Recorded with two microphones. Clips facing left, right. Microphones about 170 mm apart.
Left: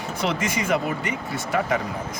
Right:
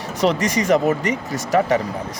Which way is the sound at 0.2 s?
40° right (ahead or behind).